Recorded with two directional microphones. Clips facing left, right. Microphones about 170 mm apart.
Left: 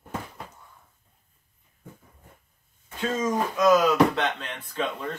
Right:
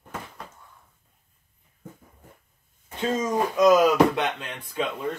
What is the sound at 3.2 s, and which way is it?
Speech, 20° right (ahead or behind).